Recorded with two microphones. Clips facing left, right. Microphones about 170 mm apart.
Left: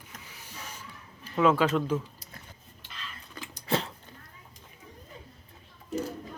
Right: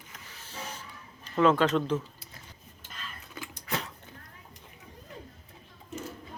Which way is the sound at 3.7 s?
30° left (ahead or behind).